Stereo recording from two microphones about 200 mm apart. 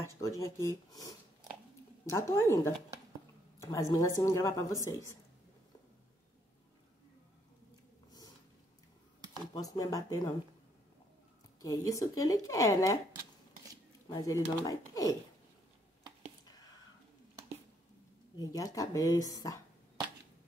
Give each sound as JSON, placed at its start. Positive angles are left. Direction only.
{"t": 0.2, "sound": "speech", "side_deg": 15}
{"t": 3.5, "sound": "a sound", "side_deg": 15}
{"t": 3.9, "sound": "speech", "side_deg": 15}
{"t": 9.5, "sound": "speech", "side_deg": 20}
{"t": 11.6, "sound": "speech", "side_deg": 15}
{"t": 14.0, "sound": "speech", "side_deg": 15}
{"t": 16.4, "sound": "whispering", "side_deg": 20}
{"t": 18.4, "sound": "speech", "side_deg": 20}